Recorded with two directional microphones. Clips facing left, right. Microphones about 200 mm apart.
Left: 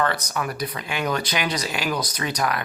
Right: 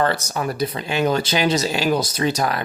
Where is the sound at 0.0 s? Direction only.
30° right (ahead or behind).